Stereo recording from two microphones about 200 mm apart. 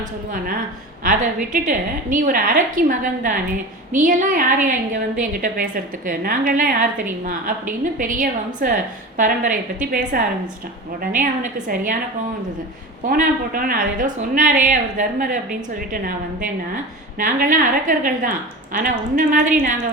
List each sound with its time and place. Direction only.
1.0 s a woman's voice: 40° right (ahead or behind)
13.0 s a woman's voice: 45° right (ahead or behind)